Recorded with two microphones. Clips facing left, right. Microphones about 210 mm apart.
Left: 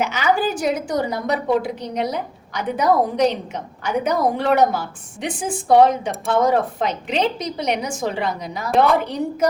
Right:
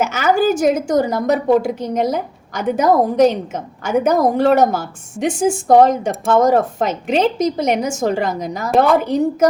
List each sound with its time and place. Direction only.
0.0 s a woman's voice: 45° right (ahead or behind)